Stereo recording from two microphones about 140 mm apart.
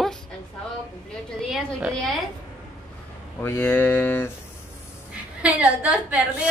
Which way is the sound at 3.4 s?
10° left (ahead or behind).